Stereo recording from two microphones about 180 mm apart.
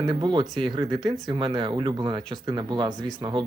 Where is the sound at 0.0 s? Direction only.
25° right (ahead or behind).